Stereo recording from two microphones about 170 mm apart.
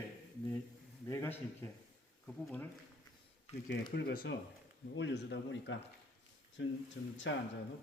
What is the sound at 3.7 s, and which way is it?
Speech, 75° left (ahead or behind).